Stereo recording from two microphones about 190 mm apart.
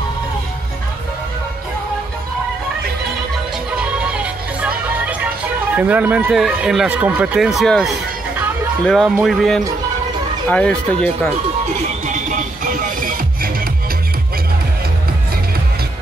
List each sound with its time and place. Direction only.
3.7 s music: 5° right (ahead or behind)
8.8 s speech: centre (ahead or behind)
12.1 s music: 45° right (ahead or behind)